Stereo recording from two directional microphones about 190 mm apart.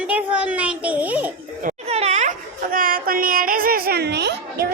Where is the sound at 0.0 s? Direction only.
5° right (ahead or behind).